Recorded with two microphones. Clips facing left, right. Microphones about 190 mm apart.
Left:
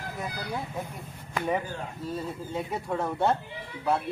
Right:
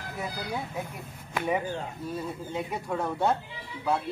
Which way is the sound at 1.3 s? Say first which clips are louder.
Right 1 dB; 5° right (ahead or behind).